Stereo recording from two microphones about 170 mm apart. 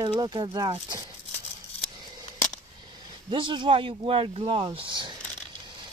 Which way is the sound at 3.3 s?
30° right (ahead or behind).